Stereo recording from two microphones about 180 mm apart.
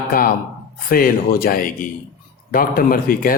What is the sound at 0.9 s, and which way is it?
Speech, 55° left (ahead or behind).